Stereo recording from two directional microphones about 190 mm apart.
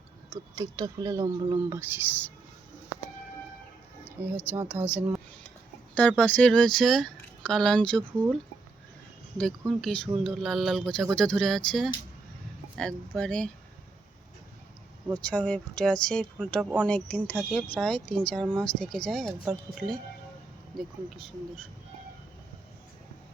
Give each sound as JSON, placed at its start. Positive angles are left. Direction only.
{"t": 0.3, "sound": "speech", "side_deg": -20}
{"t": 4.4, "sound": "speech", "side_deg": -10}
{"t": 5.9, "sound": "speech", "side_deg": 5}
{"t": 9.4, "sound": "speech", "side_deg": 5}
{"t": 15.2, "sound": "speech", "side_deg": 5}